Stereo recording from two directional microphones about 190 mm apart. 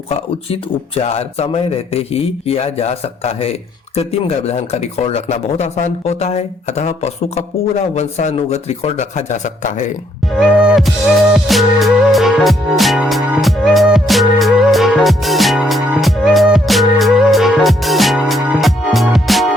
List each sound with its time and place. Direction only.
1.0 s speech: 35° left (ahead or behind)
10.3 s music: 5° right (ahead or behind)